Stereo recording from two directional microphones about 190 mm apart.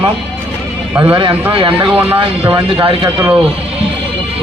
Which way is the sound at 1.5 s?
25° right (ahead or behind).